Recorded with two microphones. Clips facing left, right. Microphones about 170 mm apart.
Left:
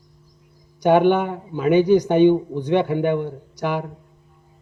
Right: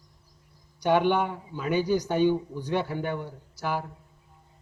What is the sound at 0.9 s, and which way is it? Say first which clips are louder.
A man's voice: left 7 dB; 55° left (ahead or behind).